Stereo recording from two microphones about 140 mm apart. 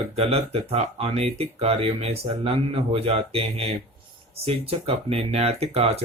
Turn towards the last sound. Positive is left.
turn(degrees=-45)  # may be behind; listen again after turning